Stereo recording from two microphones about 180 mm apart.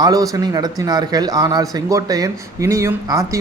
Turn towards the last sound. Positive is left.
turn(degrees=-15)  # may be behind; listen again after turning